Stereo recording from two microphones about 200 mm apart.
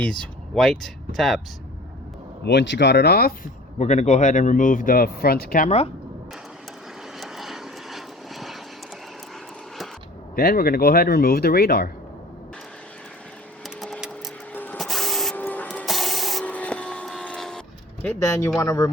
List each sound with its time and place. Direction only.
0.0 s speech: 5° left (ahead or behind)
2.5 s speech: 60° left (ahead or behind)
3.8 s a man's voice: 35° left (ahead or behind)
7.2 s vehicle: centre (ahead or behind)
10.3 s speech: 50° left (ahead or behind)
13.7 s wood: centre (ahead or behind)
14.5 s printer: 10° left (ahead or behind)
18.0 s speech: 10° left (ahead or behind)